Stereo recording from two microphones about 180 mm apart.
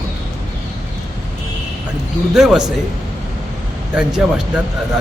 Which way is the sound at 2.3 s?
5° right (ahead or behind).